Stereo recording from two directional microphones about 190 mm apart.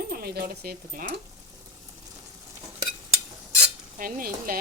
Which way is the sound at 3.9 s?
45° right (ahead or behind).